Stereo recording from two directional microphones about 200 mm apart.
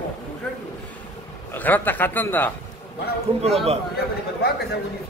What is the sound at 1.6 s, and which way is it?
Speech, 10° left (ahead or behind).